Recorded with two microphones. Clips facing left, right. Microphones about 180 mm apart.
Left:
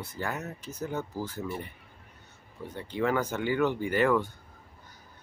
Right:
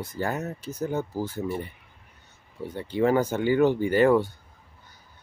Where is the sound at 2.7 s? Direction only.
30° right (ahead or behind).